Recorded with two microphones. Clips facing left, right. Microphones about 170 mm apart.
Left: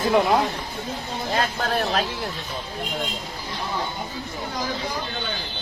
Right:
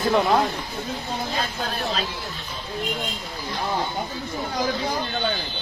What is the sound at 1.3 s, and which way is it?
Speech, 90° left.